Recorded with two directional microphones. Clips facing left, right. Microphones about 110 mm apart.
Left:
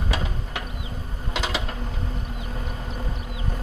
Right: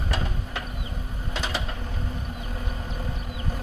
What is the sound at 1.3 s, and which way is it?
Mechanisms, 90° left.